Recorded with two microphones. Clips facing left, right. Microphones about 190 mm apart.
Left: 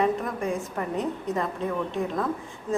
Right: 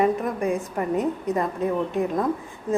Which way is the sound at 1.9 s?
20° right (ahead or behind).